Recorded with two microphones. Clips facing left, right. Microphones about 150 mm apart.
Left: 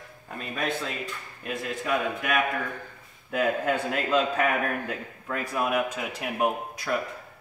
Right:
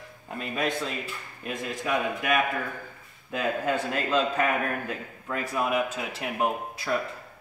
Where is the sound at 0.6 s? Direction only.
Centre (ahead or behind).